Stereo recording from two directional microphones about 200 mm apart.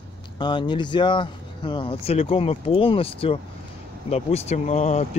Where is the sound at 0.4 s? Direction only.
25° left (ahead or behind).